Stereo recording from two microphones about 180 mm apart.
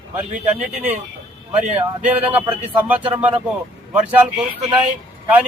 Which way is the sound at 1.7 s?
10° right (ahead or behind).